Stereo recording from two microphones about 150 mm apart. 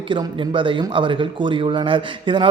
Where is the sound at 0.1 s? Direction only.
35° right (ahead or behind).